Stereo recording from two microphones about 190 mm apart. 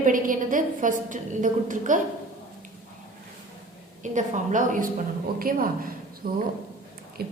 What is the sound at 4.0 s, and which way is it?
A woman's voice, 40° right (ahead or behind).